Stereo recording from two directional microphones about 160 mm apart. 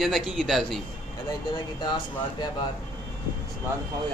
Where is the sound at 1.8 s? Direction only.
30° left (ahead or behind).